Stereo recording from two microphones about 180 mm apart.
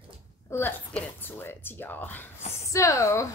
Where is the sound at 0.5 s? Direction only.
15° left (ahead or behind).